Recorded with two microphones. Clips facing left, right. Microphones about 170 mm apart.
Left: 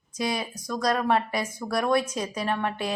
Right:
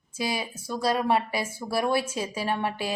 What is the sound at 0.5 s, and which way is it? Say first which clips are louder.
Speech: left 1 dB; 30° right (ahead or behind).